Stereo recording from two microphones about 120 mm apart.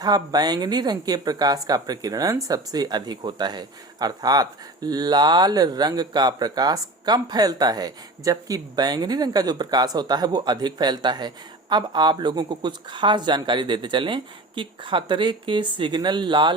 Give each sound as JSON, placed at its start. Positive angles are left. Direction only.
{"t": 0.0, "sound": "speech", "side_deg": -35}